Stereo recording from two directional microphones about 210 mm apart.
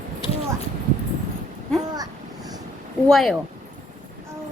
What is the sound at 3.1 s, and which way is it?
Speech, centre (ahead or behind).